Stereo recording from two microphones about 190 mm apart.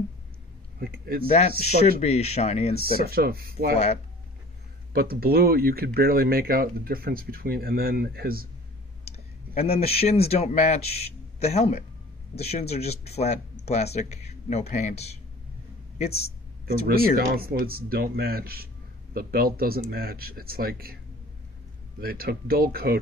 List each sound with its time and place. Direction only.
0.7 s speech: 55° right (ahead or behind)
1.2 s speech: 35° left (ahead or behind)
2.8 s speech: 50° right (ahead or behind)
3.7 s speech: 35° left (ahead or behind)
4.9 s speech: 50° right (ahead or behind)
9.6 s a man's voice: 30° left (ahead or behind)
16.6 s speech: 50° right (ahead or behind)
22.0 s speech: 50° right (ahead or behind)